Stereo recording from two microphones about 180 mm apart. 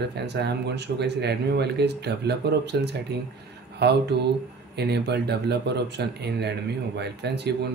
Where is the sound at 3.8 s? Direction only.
65° right (ahead or behind).